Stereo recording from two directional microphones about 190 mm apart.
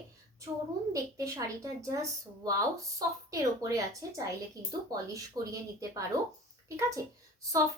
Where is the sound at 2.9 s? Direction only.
15° right (ahead or behind).